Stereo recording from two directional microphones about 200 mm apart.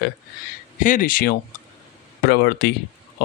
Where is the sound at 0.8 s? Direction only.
40° left (ahead or behind).